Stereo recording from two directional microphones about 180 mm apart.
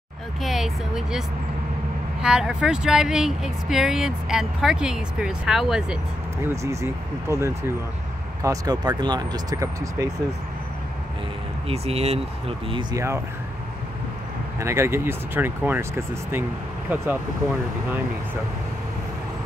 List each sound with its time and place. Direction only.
0.4 s speech: centre (ahead or behind)
2.2 s speech: 5° right (ahead or behind)
6.4 s speech: 15° right (ahead or behind)
11.6 s speech: 35° right (ahead or behind)
12.9 s speech: 15° right (ahead or behind)
14.6 s speech: 15° right (ahead or behind)